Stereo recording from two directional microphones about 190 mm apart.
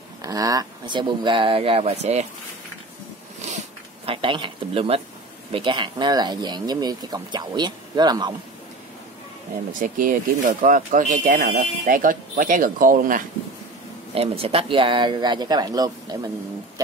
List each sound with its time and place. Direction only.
0.2 s speech: 20° right (ahead or behind); by 2.2 s 35° right (ahead or behind)
3.3 s a sound: 35° right (ahead or behind)
5.5 s speech: 25° right (ahead or behind)
9.8 s speech: 45° right (ahead or behind)
14.1 s speech: 30° right (ahead or behind)